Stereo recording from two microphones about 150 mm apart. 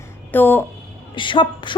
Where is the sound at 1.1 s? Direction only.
35° left (ahead or behind).